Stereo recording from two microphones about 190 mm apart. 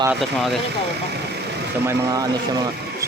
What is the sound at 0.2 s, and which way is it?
Speech, centre (ahead or behind).